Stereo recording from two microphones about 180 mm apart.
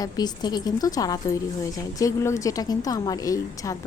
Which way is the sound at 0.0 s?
20° left (ahead or behind).